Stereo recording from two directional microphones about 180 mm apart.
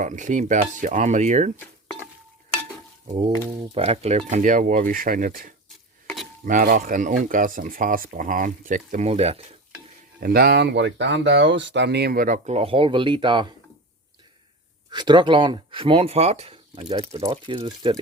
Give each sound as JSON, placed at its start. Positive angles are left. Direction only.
{"t": 0.0, "sound": "speech", "side_deg": -45}
{"t": 1.5, "sound": "a sound", "side_deg": 10}
{"t": 3.8, "sound": "speech", "side_deg": -35}
{"t": 5.6, "sound": "dishes", "side_deg": 0}
{"t": 6.4, "sound": "speech", "side_deg": -50}
{"t": 10.2, "sound": "speech", "side_deg": -55}
{"t": 14.8, "sound": "speech", "side_deg": -25}